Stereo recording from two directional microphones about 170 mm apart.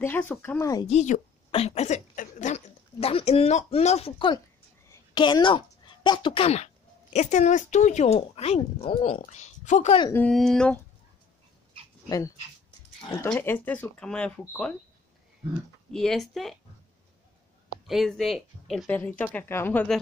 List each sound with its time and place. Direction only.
0.0 s speech: 10° left (ahead or behind)
0.8 s a woman's voice: 45° left (ahead or behind)
10.1 s speech: 5° left (ahead or behind)
13.3 s speech: 10° left (ahead or behind)
15.9 s speech: 5° left (ahead or behind)
17.8 s speech: centre (ahead or behind)
18.9 s speech: 10° left (ahead or behind)